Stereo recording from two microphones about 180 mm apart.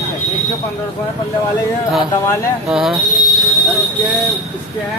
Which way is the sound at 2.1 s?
15° left (ahead or behind).